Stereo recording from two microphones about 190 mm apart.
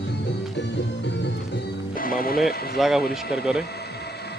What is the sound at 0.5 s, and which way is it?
Music, 65° left (ahead or behind).